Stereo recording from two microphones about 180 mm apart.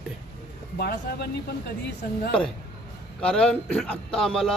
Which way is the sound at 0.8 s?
60° left (ahead or behind).